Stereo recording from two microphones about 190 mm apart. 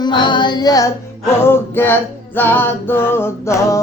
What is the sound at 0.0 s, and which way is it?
Music, 25° left (ahead or behind).